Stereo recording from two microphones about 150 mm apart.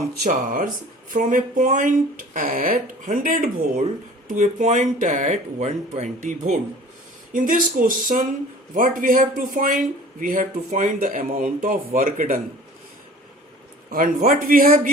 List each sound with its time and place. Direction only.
0.2 s speech: 60° right (ahead or behind)
2.3 s speech: 65° right (ahead or behind); by 6.6 s 50° right (ahead or behind)
7.3 s a man's voice: 65° right (ahead or behind)
13.9 s a man's voice: 65° right (ahead or behind)